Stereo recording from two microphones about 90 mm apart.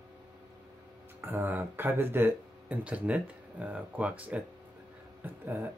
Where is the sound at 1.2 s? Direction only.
20° right (ahead or behind).